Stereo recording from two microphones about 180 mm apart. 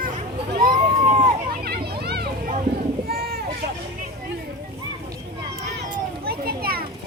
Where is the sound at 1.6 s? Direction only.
60° right (ahead or behind).